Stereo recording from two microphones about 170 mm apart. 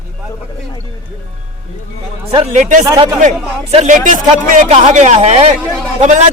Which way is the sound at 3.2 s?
40° right (ahead or behind).